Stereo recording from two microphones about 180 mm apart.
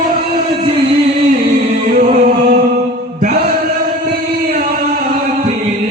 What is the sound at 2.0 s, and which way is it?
Music, 55° right (ahead or behind).